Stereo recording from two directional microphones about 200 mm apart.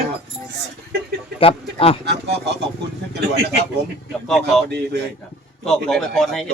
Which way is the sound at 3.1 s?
55° right (ahead or behind).